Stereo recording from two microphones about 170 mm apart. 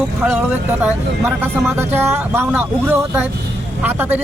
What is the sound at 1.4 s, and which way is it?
Speech, 10° right (ahead or behind).